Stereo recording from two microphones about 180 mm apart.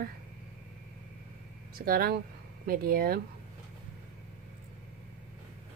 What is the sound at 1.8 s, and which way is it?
A woman's voice, 55° right (ahead or behind).